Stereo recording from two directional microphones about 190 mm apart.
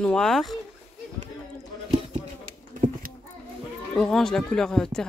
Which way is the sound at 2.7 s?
40° right (ahead or behind).